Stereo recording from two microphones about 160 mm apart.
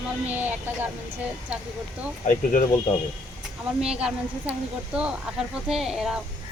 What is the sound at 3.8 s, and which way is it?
A woman's voice, 5° right (ahead or behind).